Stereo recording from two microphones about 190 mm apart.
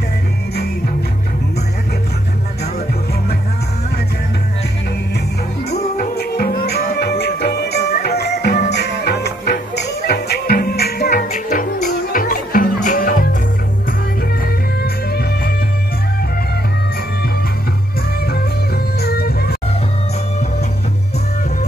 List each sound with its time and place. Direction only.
5.7 s music: 55° left (ahead or behind)
14.4 s music: 55° left (ahead or behind)
18.9 s music: 55° left (ahead or behind)